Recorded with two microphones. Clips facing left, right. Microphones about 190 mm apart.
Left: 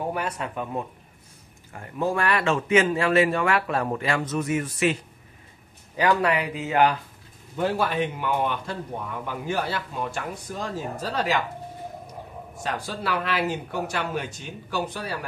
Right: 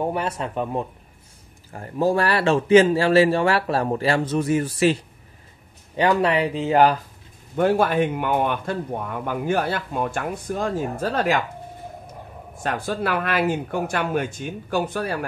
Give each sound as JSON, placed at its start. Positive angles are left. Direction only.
{"t": 0.1, "sound": "speech", "side_deg": -30}
{"t": 7.5, "sound": "a man's voice", "side_deg": -55}
{"t": 12.6, "sound": "a man's voice", "side_deg": -55}